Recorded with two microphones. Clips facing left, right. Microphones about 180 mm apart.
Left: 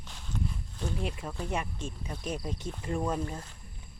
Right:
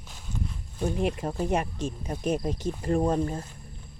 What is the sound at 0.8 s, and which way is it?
Speech, 55° right (ahead or behind).